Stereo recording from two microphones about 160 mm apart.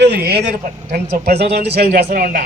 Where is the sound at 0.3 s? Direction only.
90° right; by 2.5 s 65° right (ahead or behind).